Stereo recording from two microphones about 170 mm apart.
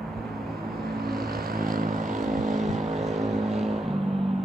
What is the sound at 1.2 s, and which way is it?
Vehicle, 60° right (ahead or behind).